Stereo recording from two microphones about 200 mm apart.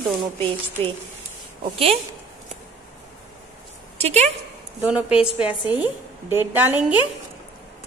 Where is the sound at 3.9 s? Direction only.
30° right (ahead or behind).